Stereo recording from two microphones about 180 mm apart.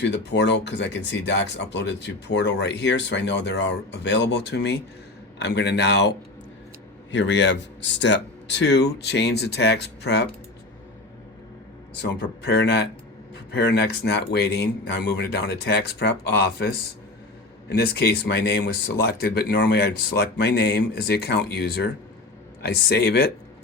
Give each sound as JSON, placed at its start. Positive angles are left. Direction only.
{"t": 0.0, "sound": "speech", "side_deg": 70}
{"t": 7.1, "sound": "speech", "side_deg": 80}
{"t": 12.4, "sound": "speech", "side_deg": 70}
{"t": 17.7, "sound": "speech", "side_deg": 65}